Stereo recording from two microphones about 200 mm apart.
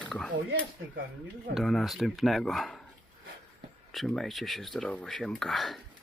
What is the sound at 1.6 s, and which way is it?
Speech, centre (ahead or behind).